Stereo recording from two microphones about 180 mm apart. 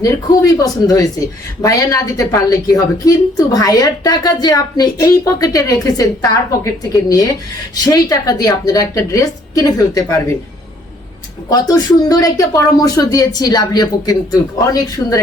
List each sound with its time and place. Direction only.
0.0 s a woman's voice: 20° left (ahead or behind)
11.4 s a woman's voice: 20° left (ahead or behind)